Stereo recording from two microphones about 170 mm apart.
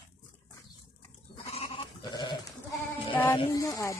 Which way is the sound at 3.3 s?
20° left (ahead or behind).